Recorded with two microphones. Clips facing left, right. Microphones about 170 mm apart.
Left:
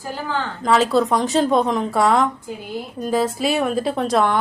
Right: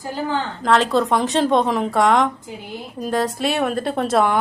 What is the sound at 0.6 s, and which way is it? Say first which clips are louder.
A woman's voice: left 1 dB; centre (ahead or behind).